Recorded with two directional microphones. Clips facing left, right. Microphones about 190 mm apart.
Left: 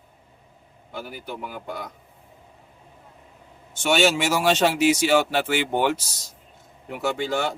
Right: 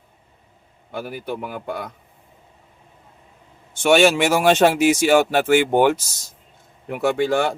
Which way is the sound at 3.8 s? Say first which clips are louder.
Right 6 dB; 60° right (ahead or behind).